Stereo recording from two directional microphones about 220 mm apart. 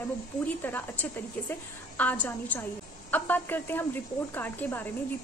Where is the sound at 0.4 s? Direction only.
10° left (ahead or behind).